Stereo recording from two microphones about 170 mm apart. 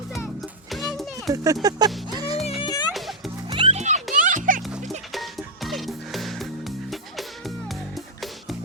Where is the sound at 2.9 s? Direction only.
Centre (ahead or behind).